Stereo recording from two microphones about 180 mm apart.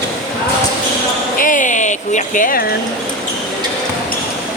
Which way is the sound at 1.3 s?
50° left (ahead or behind).